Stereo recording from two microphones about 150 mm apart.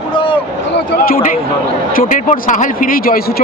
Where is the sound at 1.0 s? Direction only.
70° left (ahead or behind).